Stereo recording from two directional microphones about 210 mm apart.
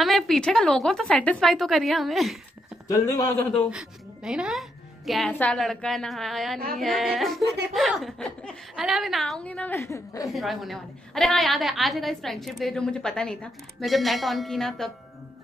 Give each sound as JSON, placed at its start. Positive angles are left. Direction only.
{"t": 0.0, "sound": "a woman's voice", "side_deg": 0}
{"t": 2.9, "sound": "a man's voice", "side_deg": 15}
{"t": 3.7, "sound": "a woman's voice", "side_deg": -5}
{"t": 10.3, "sound": "a woman's voice", "side_deg": 0}